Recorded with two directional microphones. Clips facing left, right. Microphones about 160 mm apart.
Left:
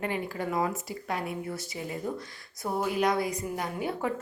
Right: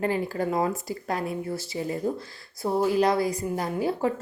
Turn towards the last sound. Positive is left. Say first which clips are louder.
# right 5 dB
turn(degrees=-35)  # may be behind; listen again after turning